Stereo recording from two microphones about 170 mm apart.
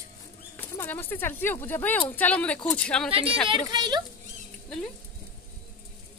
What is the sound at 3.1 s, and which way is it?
Speech, 30° right (ahead or behind).